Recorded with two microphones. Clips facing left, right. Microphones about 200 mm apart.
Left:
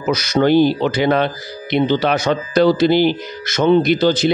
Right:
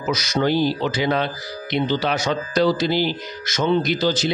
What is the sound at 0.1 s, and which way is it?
Speech, 60° left (ahead or behind).